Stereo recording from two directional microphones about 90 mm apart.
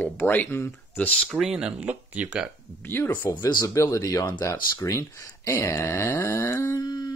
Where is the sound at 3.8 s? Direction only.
35° left (ahead or behind).